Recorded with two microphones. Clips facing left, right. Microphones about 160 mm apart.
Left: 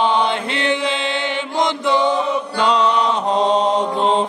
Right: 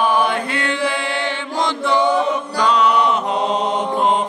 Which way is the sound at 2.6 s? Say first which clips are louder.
Right 1 dB; 30° left (ahead or behind).